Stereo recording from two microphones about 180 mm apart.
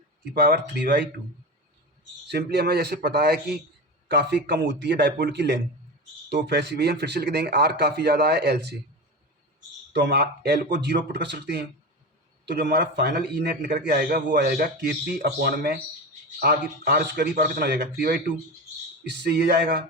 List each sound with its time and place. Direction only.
0.3 s a man's voice: 60° right (ahead or behind)
2.3 s a man's voice: 65° right (ahead or behind)
9.9 s speech: 70° right (ahead or behind)
12.5 s a man's voice: 60° right (ahead or behind)
19.0 s a man's voice: 65° right (ahead or behind)